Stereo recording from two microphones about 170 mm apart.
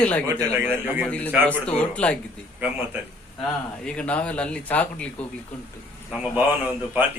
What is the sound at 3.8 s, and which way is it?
Speech, 5° left (ahead or behind).